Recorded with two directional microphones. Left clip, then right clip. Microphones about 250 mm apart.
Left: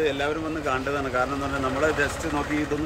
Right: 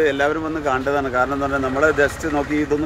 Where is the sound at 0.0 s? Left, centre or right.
Centre.